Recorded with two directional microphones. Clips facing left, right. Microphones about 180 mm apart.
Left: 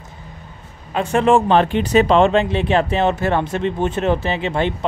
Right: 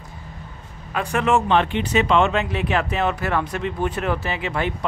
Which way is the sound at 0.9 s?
30° left (ahead or behind).